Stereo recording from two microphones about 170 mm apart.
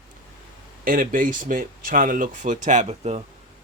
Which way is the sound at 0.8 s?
55° right (ahead or behind).